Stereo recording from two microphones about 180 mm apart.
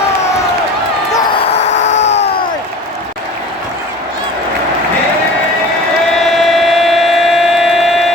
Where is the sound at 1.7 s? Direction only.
85° left.